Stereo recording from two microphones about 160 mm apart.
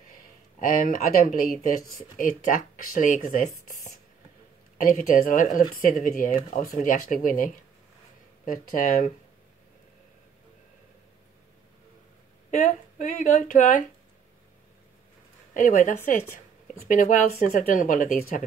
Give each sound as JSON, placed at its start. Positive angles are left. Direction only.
{"t": 0.8, "sound": "speech", "side_deg": 55}
{"t": 4.8, "sound": "speech", "side_deg": 55}
{"t": 8.7, "sound": "speech", "side_deg": 55}
{"t": 12.4, "sound": "speech", "side_deg": 55}
{"t": 15.5, "sound": "speech", "side_deg": 55}